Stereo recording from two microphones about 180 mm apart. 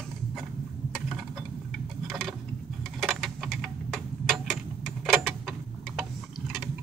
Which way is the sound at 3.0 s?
Centre (ahead or behind).